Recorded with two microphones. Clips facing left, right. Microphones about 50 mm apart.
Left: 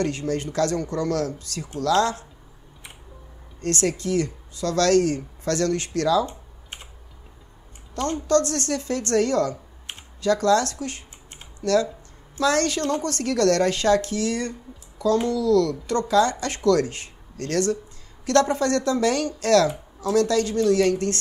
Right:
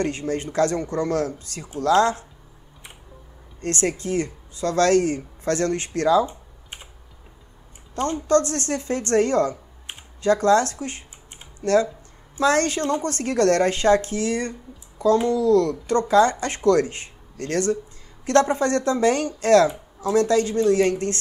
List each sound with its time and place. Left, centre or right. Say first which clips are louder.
0.0 s speech: even; right
3.6 s speech: even; right
6.2 s computer keyboard: right 1 dB; centre
7.9 s speech: right 1 dB; right